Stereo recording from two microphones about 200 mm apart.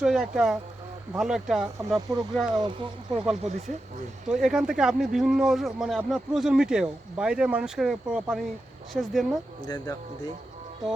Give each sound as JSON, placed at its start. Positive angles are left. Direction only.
{"t": 0.0, "sound": "speech", "side_deg": -5}
{"t": 2.6, "sound": "speech", "side_deg": -25}
{"t": 4.3, "sound": "speech", "side_deg": -5}
{"t": 9.6, "sound": "speech", "side_deg": 20}